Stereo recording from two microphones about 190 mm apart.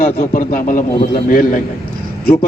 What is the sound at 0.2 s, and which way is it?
A man's voice, 45° left (ahead or behind).